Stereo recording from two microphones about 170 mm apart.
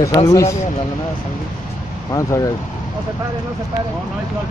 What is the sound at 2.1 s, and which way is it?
Speech, 20° left (ahead or behind).